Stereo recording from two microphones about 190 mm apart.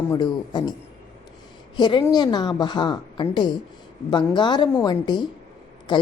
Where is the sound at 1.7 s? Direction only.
20° left (ahead or behind).